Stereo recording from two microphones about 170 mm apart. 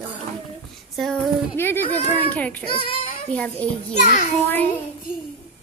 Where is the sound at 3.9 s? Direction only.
45° left (ahead or behind).